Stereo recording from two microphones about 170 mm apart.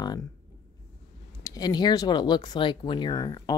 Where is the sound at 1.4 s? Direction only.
20° left (ahead or behind).